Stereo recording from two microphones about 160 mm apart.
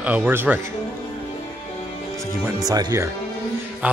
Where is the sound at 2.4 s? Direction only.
25° right (ahead or behind).